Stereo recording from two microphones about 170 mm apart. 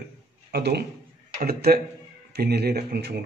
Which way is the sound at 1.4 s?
60° right (ahead or behind).